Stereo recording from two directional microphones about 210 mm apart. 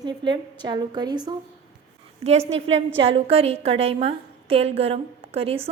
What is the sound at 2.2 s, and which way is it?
A woman's voice, 30° right (ahead or behind).